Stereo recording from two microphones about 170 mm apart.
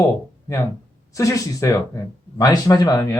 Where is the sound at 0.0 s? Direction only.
15° left (ahead or behind).